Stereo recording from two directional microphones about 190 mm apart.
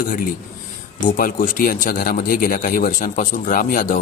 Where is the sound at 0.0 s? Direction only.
50° left (ahead or behind).